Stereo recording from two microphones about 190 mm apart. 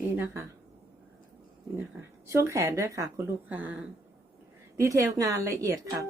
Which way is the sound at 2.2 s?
15° right (ahead or behind).